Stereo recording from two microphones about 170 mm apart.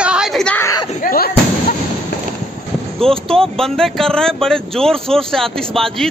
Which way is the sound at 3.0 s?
5° left (ahead or behind).